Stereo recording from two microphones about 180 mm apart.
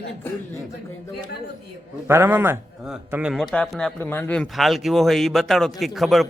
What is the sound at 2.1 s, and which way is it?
A man's voice, 15° right (ahead or behind).